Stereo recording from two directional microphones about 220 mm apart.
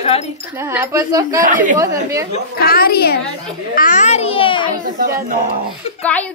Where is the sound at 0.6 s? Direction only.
10° right (ahead or behind).